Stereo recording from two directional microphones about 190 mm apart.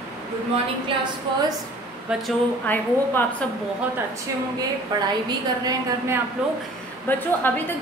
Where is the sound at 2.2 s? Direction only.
10° left (ahead or behind).